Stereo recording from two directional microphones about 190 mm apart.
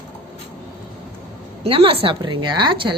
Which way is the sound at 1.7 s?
30° right (ahead or behind).